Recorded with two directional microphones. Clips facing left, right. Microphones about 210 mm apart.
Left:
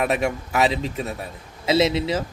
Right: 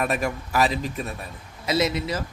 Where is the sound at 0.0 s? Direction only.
25° left (ahead or behind).